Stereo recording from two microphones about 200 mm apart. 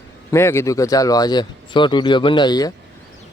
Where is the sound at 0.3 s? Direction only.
15° left (ahead or behind).